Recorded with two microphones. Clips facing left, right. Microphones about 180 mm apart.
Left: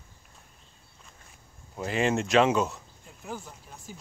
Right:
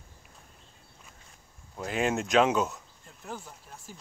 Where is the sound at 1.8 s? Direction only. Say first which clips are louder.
Left 2 dB; centre (ahead or behind).